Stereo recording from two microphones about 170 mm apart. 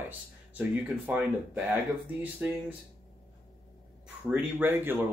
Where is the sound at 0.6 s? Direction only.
10° right (ahead or behind).